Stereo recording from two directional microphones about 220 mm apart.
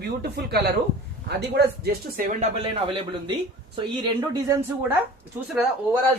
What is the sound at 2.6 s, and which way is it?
Speech, 20° right (ahead or behind).